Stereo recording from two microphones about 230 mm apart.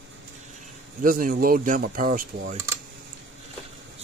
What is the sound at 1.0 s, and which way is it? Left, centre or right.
Speech, right.